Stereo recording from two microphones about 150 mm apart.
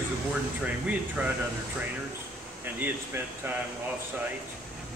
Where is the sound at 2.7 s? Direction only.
10° right (ahead or behind).